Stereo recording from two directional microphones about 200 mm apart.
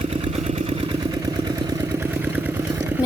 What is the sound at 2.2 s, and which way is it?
Vehicle, 10° right (ahead or behind).